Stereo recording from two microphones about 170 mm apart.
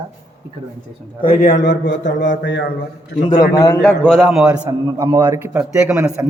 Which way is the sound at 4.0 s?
Centre (ahead or behind).